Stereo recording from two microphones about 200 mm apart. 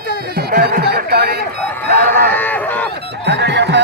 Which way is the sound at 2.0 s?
45° right (ahead or behind).